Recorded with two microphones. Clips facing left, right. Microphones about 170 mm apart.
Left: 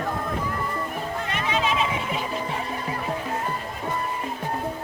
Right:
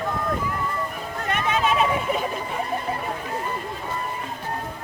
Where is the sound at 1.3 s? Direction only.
50° right (ahead or behind).